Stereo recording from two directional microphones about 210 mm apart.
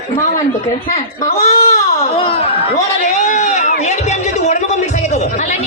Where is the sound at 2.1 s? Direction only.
25° left (ahead or behind).